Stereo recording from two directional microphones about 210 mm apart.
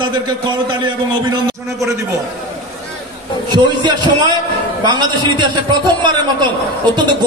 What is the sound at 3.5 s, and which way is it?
A man's voice, 20° right (ahead or behind).